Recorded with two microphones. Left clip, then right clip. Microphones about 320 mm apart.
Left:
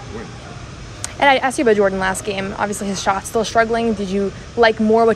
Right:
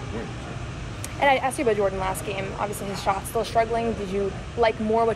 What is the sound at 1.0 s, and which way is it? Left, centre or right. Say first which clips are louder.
Speech: left 7 dB; left.